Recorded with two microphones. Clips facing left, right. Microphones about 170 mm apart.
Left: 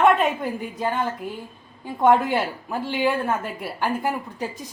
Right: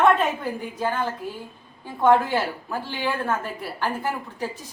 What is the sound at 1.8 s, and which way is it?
A woman's voice, 15° left (ahead or behind).